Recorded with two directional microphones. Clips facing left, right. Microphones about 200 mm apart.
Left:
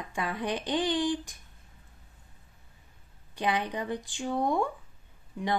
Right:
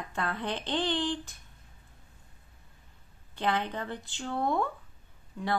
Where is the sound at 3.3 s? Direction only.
15° left (ahead or behind).